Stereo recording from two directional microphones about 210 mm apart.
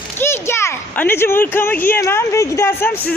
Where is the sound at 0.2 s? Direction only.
10° left (ahead or behind).